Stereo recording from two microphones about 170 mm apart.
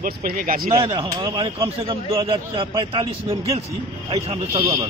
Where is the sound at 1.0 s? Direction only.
25° right (ahead or behind).